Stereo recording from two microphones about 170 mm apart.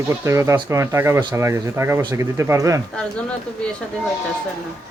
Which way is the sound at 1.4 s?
15° right (ahead or behind).